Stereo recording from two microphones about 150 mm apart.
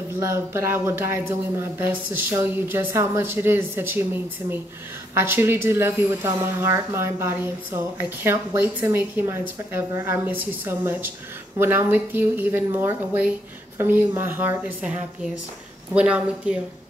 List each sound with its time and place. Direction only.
0.2 s speech: 20° right (ahead or behind)